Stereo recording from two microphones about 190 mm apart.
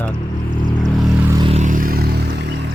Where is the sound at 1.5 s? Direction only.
45° right (ahead or behind); by 2.5 s 60° right (ahead or behind).